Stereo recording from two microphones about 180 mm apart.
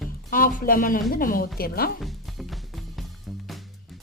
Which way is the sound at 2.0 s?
Centre (ahead or behind).